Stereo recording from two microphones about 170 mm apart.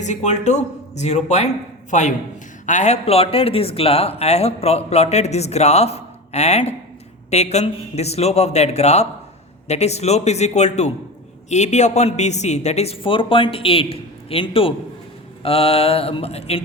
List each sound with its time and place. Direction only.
0.0 s a man's voice: 45° left (ahead or behind)